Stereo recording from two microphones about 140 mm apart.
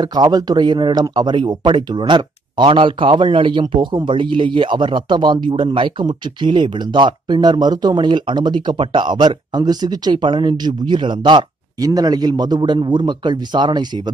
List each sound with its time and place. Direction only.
0.0 s speech: 30° right (ahead or behind)